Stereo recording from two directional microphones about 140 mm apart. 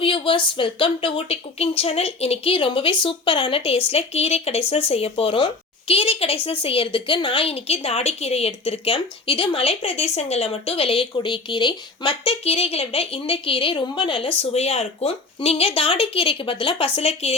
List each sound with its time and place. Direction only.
0.0 s a woman's voice: 40° left (ahead or behind)